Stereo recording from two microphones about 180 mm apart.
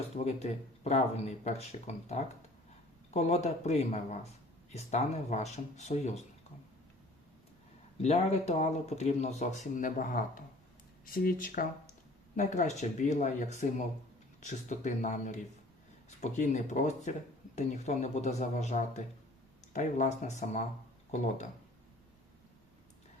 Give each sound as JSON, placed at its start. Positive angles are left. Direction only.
{"t": 0.3, "sound": "speech", "side_deg": 35}
{"t": 7.9, "sound": "speech", "side_deg": 40}